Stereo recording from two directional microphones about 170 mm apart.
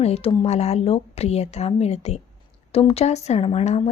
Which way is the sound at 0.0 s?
35° left (ahead or behind).